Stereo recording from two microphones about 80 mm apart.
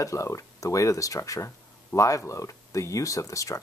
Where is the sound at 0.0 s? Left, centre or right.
Left.